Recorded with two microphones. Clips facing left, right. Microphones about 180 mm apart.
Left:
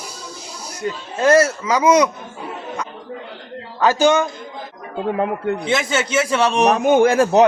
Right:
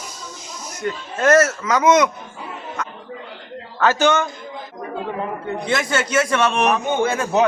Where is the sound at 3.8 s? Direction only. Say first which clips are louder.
Left 2 dB; 10° left (ahead or behind).